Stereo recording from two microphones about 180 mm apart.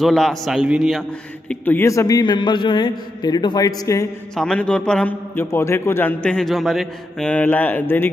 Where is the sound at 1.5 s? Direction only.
10° left (ahead or behind).